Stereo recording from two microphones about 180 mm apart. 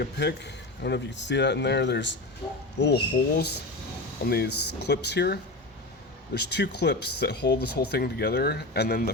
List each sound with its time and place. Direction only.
0.0 s speech: 70° left (ahead or behind)
2.4 s speech: 25° left (ahead or behind)
2.7 s speech: 70° left (ahead or behind)